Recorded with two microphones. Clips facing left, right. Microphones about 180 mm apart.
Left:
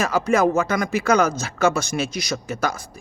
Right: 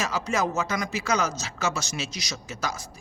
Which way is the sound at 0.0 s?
55° left (ahead or behind).